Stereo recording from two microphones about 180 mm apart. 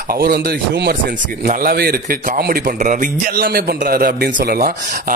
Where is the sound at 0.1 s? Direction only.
55° right (ahead or behind).